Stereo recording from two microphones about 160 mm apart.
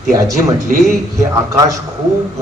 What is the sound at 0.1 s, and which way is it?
Speech, 20° right (ahead or behind).